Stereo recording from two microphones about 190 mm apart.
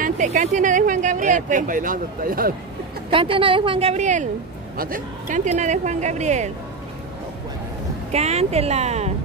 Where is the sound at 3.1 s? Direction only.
30° right (ahead or behind).